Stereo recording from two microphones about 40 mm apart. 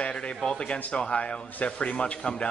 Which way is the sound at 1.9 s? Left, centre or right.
Left.